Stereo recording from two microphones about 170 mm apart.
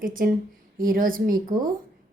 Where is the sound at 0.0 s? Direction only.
55° right (ahead or behind).